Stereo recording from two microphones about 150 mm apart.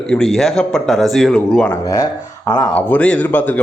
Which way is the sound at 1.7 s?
20° left (ahead or behind).